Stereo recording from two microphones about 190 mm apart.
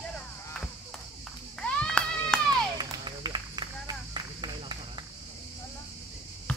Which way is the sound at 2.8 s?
20° right (ahead or behind).